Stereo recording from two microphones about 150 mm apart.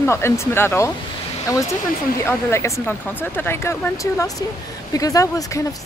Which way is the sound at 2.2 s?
15° left (ahead or behind).